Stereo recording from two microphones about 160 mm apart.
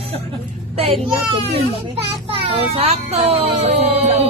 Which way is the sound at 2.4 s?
35° right (ahead or behind).